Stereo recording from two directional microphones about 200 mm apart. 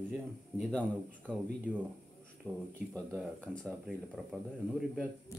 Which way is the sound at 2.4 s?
10° right (ahead or behind).